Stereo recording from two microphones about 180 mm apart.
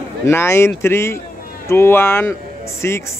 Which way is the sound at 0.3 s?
15° left (ahead or behind).